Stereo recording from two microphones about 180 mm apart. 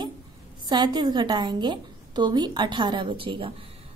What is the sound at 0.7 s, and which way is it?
A woman's voice, 25° right (ahead or behind).